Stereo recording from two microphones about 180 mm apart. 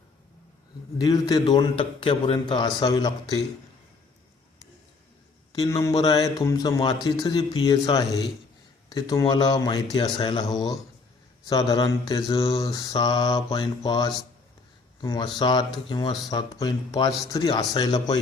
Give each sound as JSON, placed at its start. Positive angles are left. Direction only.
{"t": 0.9, "sound": "a man's voice", "side_deg": 20}
{"t": 5.5, "sound": "a man's voice", "side_deg": 20}